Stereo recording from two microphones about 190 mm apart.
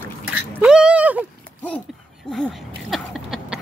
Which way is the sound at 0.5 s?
5° right (ahead or behind).